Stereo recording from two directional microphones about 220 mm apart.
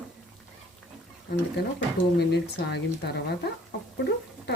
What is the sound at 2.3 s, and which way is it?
Speech, 50° left (ahead or behind).